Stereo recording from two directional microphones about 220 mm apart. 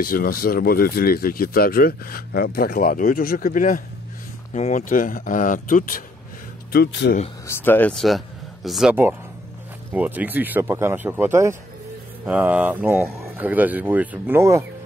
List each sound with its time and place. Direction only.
0.0 s speech: 40° left (ahead or behind)
6.7 s speech: 50° left (ahead or behind)
7.4 s speech: 10° left (ahead or behind); by 14.7 s 10° right (ahead or behind)